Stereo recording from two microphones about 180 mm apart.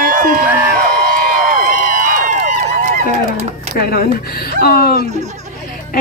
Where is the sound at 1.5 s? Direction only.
45° right (ahead or behind).